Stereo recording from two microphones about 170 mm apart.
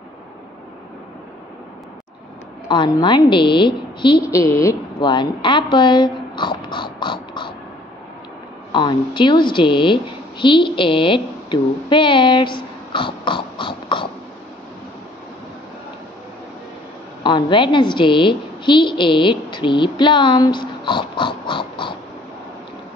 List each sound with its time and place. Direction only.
2.7 s a woman's voice: 25° left (ahead or behind)
4.3 s a sound: 15° left (ahead or behind)
8.7 s a woman's voice: 25° left (ahead or behind)
17.2 s a woman's voice: 25° left (ahead or behind)